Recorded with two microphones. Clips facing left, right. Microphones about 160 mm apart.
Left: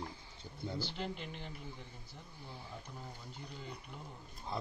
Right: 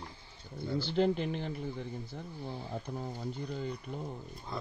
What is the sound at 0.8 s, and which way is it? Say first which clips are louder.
Speech: right 15 dB; 65° right (ahead or behind).